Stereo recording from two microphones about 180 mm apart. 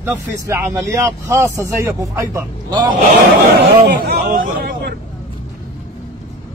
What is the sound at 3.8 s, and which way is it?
Speech, 55° right (ahead or behind).